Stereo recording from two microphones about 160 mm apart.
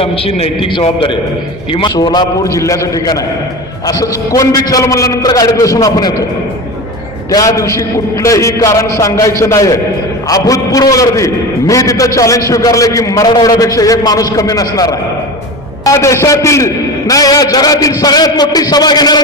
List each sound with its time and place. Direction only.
0.0 s a man's voice: 35° left (ahead or behind)
7.3 s a man's voice: 20° left (ahead or behind)